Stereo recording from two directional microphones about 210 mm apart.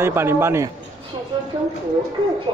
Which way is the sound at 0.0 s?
10° right (ahead or behind).